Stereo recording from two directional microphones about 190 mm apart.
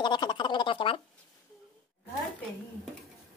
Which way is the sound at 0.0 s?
25° left (ahead or behind).